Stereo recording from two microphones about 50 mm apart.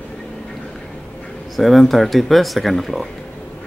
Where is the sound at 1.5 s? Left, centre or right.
Centre.